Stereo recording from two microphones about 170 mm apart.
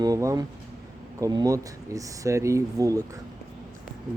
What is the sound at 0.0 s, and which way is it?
Speech, 20° right (ahead or behind).